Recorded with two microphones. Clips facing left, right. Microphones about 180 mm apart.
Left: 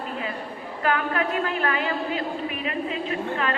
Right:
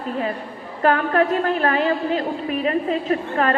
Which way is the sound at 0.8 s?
40° right (ahead or behind).